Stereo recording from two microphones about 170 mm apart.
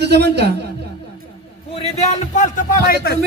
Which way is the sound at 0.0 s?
75° right (ahead or behind).